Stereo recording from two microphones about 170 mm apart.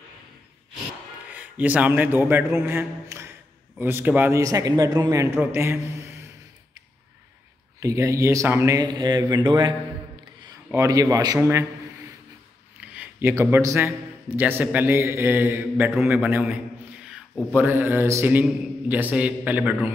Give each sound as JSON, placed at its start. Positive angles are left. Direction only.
{"t": 1.3, "sound": "a man's voice", "side_deg": -10}
{"t": 7.8, "sound": "a man's voice", "side_deg": -20}
{"t": 12.9, "sound": "a man's voice", "side_deg": -15}